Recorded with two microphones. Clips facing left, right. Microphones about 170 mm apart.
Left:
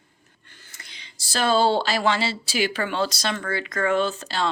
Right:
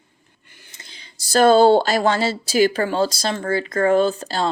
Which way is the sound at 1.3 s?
45° right (ahead or behind).